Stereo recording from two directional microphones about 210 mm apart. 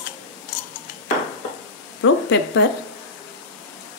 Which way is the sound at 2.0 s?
60° left (ahead or behind).